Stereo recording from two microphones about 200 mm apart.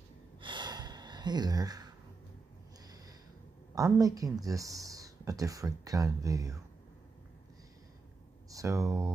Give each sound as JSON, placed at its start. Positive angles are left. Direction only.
{"t": 0.4, "sound": "gasp", "side_deg": -25}
{"t": 3.7, "sound": "speech", "side_deg": -15}
{"t": 8.5, "sound": "speech", "side_deg": -15}